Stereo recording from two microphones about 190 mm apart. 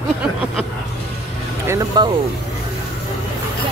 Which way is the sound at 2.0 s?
20° right (ahead or behind).